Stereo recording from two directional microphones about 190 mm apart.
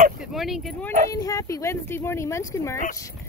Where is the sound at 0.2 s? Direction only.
Centre (ahead or behind).